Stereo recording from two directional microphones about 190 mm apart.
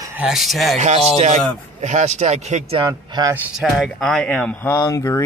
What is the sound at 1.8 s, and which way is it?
A man's voice, 35° right (ahead or behind).